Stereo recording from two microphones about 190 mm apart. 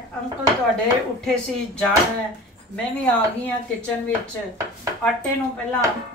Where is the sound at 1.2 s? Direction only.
5° left (ahead or behind).